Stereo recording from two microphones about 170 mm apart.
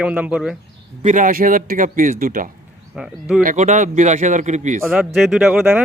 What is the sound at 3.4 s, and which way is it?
Speech, 50° right (ahead or behind).